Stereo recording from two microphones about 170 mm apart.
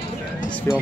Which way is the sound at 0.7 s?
15° left (ahead or behind).